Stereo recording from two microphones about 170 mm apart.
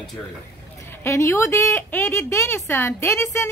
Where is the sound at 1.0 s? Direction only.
15° left (ahead or behind).